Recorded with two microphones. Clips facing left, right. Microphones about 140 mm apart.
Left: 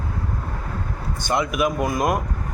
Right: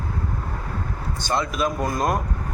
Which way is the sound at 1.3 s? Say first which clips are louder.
Left 2 dB; 15° left (ahead or behind).